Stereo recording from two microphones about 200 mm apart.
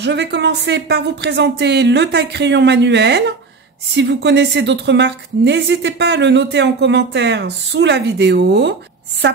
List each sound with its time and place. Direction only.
0.0 s a woman's voice: 60° right (ahead or behind)